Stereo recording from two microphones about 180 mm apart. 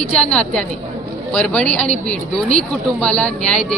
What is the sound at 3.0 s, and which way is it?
Speech, 5° left (ahead or behind).